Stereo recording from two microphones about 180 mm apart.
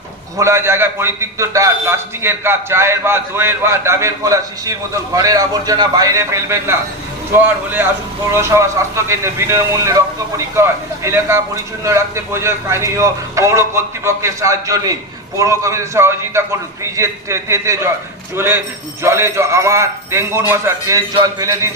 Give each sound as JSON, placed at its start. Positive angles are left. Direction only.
{"t": 0.3, "sound": "a man's voice", "side_deg": -15}